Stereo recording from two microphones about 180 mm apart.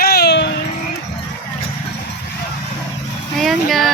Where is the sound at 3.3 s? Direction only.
Centre (ahead or behind).